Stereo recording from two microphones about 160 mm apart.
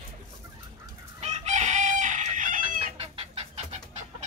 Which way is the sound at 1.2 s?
45° right (ahead or behind).